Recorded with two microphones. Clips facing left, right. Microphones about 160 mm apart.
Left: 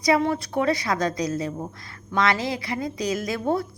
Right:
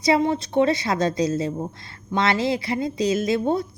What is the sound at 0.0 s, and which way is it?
A woman's voice, 25° right (ahead or behind).